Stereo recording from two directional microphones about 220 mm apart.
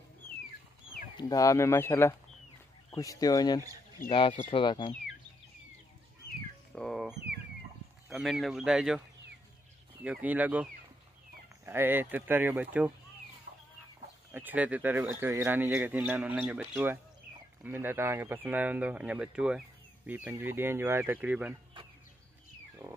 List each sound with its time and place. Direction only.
1.1 s speech: 15° left (ahead or behind)
6.7 s a sound: centre (ahead or behind)
8.1 s speech: centre (ahead or behind)
10.0 s a man's voice: 5° right (ahead or behind)
13.5 s chicken: 50° right (ahead or behind)
14.3 s a man's voice: 10° right (ahead or behind)